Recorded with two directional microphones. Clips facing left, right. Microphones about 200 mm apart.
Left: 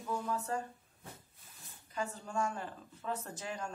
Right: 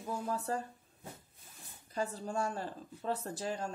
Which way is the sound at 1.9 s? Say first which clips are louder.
Right 2 dB; 35° right (ahead or behind).